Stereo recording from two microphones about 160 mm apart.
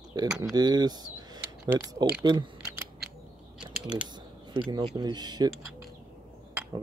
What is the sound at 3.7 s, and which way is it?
Speech, 5° right (ahead or behind).